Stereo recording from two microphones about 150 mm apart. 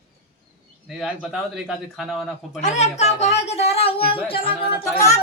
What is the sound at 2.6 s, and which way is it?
Speech, 50° left (ahead or behind).